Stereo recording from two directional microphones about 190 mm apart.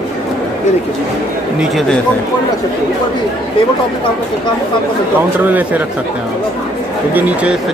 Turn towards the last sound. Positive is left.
turn(degrees=-10)  # may be behind; listen again after turning